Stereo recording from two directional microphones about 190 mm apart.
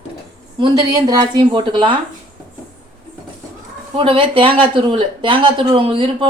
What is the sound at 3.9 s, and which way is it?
Speech, 25° right (ahead or behind).